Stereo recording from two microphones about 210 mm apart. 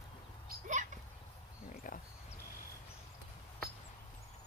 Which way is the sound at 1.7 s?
40° left (ahead or behind).